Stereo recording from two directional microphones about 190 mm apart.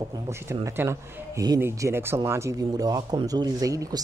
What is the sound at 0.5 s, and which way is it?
Speech, 15° right (ahead or behind).